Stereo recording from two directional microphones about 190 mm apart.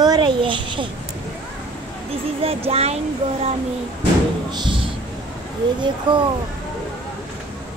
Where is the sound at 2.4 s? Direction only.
30° right (ahead or behind).